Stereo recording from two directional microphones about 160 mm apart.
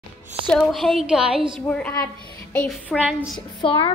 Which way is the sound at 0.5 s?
Centre (ahead or behind).